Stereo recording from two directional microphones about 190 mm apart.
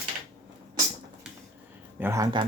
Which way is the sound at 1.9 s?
15° right (ahead or behind).